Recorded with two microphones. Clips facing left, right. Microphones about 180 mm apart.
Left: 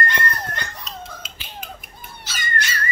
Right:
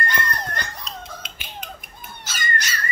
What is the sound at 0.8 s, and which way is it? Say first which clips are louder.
Finger snapping: even; 5° left (ahead or behind).